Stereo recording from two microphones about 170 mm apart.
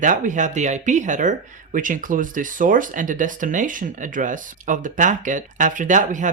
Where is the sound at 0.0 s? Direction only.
50° right (ahead or behind).